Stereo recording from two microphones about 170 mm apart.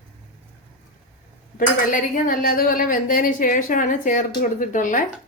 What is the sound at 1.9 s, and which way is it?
A woman's voice, 50° left (ahead or behind).